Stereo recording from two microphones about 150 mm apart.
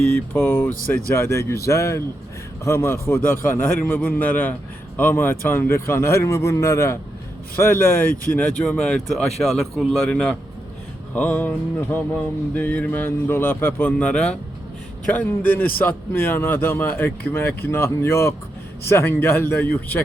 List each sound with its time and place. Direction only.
0.3 s speech: 5° left (ahead or behind)
1.0 s a man's voice: 15° left (ahead or behind)